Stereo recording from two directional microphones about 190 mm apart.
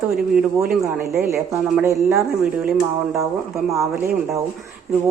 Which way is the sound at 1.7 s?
15° right (ahead or behind).